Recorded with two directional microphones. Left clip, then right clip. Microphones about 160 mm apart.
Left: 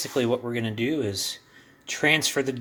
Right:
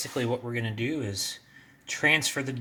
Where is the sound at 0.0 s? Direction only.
30° left (ahead or behind).